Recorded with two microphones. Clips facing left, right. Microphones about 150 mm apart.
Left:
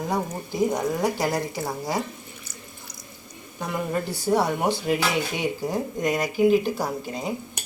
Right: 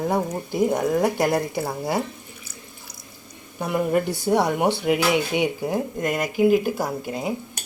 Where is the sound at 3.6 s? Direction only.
15° right (ahead or behind).